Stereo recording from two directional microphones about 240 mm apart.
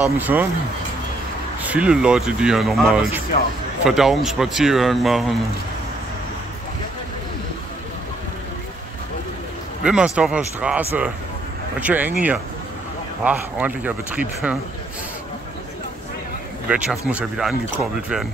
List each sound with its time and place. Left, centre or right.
0.0 s speech: centre
1.6 s speech: centre
9.8 s speech: centre
16.6 s speech: centre